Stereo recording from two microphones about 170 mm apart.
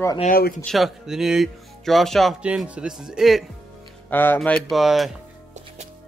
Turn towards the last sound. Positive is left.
turn(degrees=0)  # may be behind; listen again after turning